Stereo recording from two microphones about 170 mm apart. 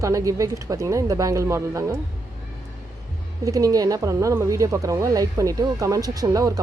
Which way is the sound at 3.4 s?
20° right (ahead or behind).